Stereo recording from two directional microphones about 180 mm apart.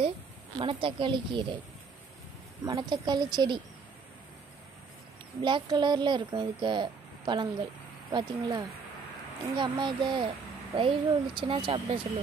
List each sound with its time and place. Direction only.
0.6 s speech: 30° right (ahead or behind)
2.6 s speech: 25° right (ahead or behind)
5.4 s speech: 25° right (ahead or behind)